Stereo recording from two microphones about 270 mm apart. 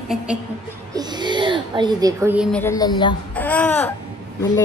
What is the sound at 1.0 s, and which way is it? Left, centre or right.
Speech, centre.